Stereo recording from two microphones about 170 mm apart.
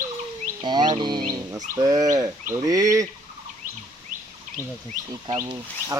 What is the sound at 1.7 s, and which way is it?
Bird, 20° right (ahead or behind).